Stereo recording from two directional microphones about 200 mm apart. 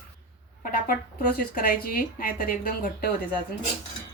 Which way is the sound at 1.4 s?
45° left (ahead or behind).